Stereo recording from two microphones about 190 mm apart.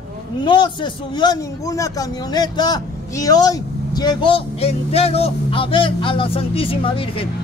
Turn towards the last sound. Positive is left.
turn(degrees=30)  # may be behind; listen again after turning